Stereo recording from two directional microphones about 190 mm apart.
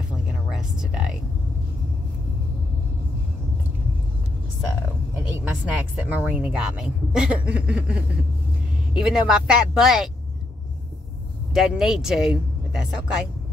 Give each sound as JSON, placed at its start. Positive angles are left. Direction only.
{"t": 0.5, "sound": "a sound", "side_deg": -5}
{"t": 5.7, "sound": "a woman's voice", "side_deg": -5}
{"t": 11.5, "sound": "speech", "side_deg": 0}